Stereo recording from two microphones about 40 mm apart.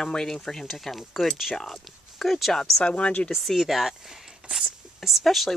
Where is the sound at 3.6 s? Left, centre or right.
Centre.